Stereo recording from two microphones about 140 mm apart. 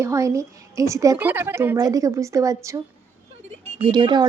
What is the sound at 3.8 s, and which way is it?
Speech, 35° right (ahead or behind).